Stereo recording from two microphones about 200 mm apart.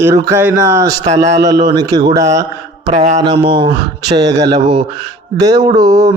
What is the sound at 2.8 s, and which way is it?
Mantra, 35° right (ahead or behind).